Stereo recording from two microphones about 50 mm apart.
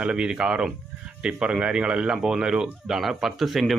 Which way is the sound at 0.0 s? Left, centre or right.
Centre.